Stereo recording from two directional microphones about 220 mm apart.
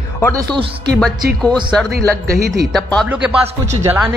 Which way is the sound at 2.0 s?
15° right (ahead or behind).